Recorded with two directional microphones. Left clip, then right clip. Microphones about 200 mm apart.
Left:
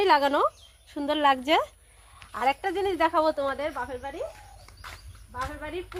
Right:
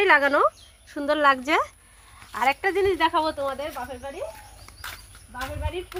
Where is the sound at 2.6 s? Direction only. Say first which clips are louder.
Right 4 dB; 15° left (ahead or behind).